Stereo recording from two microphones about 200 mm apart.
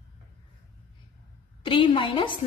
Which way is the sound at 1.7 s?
25° left (ahead or behind).